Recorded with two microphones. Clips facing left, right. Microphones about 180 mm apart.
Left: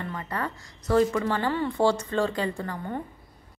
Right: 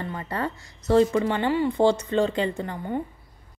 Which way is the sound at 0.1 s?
30° right (ahead or behind).